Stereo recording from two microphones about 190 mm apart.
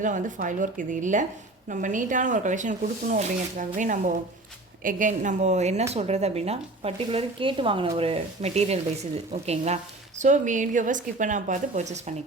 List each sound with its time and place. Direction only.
0.0 s speech: 40° right (ahead or behind)